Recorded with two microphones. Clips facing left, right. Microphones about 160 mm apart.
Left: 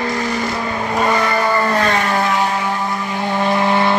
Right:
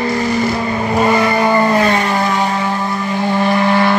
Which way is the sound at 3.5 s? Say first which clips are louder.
Right 1 dB; 20° left (ahead or behind).